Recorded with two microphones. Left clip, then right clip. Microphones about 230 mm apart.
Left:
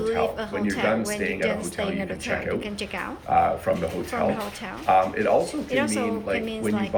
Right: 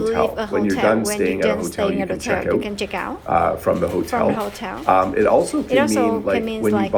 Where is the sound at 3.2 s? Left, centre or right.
Right.